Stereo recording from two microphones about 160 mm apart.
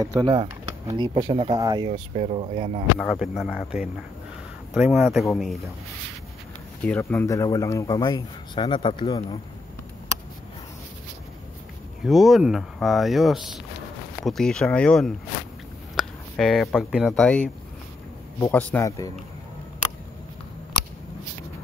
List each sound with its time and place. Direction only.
0.0 s speech: 30° right (ahead or behind)
1.9 s speech: 40° right (ahead or behind)
3.0 s speech: centre (ahead or behind)
5.3 s speech: centre (ahead or behind)
7.0 s a man's voice: 15° left (ahead or behind)
12.0 s a man's voice: centre (ahead or behind)
18.9 s a man's voice: 20° left (ahead or behind)